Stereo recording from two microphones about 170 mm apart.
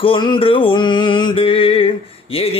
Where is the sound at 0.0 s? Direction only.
30° left (ahead or behind).